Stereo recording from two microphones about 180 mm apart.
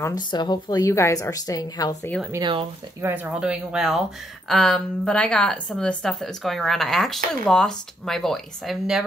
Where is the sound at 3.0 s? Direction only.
10° right (ahead or behind).